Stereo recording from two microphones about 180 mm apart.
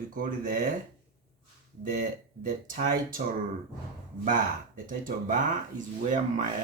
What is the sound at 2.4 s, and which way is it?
Speech, 50° right (ahead or behind).